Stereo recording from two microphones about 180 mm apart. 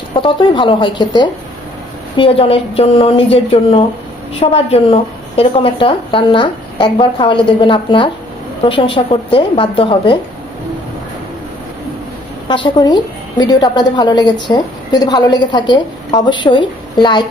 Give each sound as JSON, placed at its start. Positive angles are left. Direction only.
{"t": 0.1, "sound": "a woman's voice", "side_deg": 30}
{"t": 12.4, "sound": "speech", "side_deg": 25}